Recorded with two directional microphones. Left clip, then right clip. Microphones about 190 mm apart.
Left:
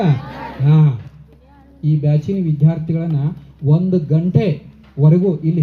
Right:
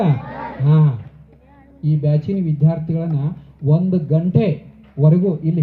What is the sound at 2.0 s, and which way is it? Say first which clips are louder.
Speech: even; 15° left (ahead or behind).